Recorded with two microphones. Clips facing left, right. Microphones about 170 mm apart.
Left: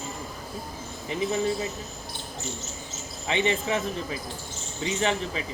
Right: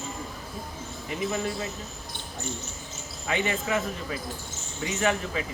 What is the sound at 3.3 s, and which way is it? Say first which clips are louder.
Speech: left 2 dB; 25° left (ahead or behind).